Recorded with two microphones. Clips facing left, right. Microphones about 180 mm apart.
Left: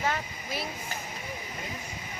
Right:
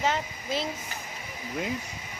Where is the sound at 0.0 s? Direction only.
20° right (ahead or behind).